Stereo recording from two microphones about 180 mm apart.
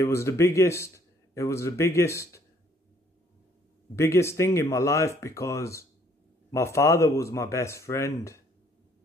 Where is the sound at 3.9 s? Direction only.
15° left (ahead or behind).